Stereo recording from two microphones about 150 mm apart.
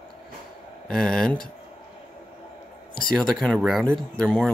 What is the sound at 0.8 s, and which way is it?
Speech, 5° left (ahead or behind).